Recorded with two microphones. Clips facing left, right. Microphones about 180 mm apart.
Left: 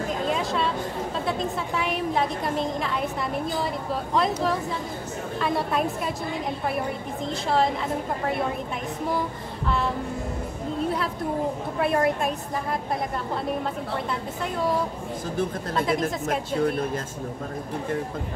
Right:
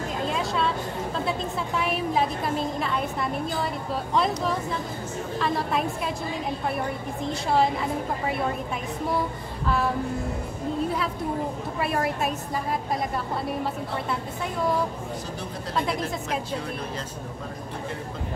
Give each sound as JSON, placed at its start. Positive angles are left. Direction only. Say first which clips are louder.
{"t": 0.3, "sound": "a sound", "louder": "left 1 dB", "side_deg": 0}
{"t": 1.8, "sound": "a woman's voice", "louder": "right 1 dB", "side_deg": 0}
{"t": 7.4, "sound": "a woman's voice", "louder": "even", "side_deg": -5}
{"t": 11.8, "sound": "a woman's voice", "louder": "left 4 dB", "side_deg": 0}
{"t": 15.9, "sound": "a woman's voice", "louder": "left 4 dB", "side_deg": 50}